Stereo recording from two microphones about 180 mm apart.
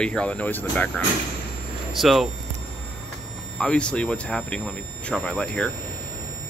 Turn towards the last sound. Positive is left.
turn(degrees=5)  # may be behind; listen again after turning